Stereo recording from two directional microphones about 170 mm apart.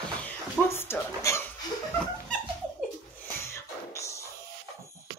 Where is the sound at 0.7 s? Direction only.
15° left (ahead or behind).